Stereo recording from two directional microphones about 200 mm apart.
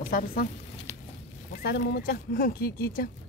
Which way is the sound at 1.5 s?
55° left (ahead or behind).